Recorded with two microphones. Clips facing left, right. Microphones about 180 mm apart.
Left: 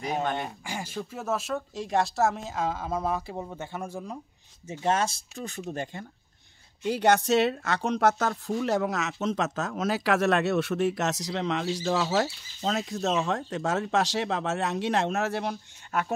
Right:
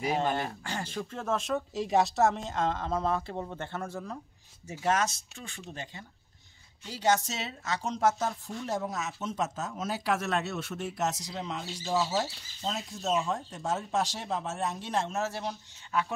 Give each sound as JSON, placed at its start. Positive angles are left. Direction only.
{"t": 0.0, "sound": "speech", "side_deg": -5}
{"t": 0.5, "sound": "speech", "side_deg": 10}
{"t": 4.6, "sound": "speech", "side_deg": 30}
{"t": 5.4, "sound": "speech", "side_deg": 45}